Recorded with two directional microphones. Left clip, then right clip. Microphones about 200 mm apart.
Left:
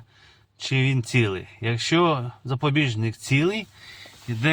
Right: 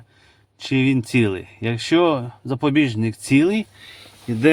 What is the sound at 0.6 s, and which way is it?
Speech, 40° right (ahead or behind).